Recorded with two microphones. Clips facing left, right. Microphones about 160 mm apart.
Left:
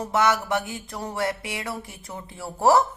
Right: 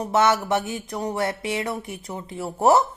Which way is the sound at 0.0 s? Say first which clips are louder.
Right 2 dB; 20° right (ahead or behind).